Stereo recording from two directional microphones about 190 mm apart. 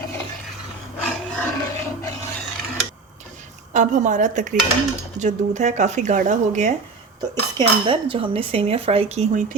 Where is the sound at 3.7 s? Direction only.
40° right (ahead or behind).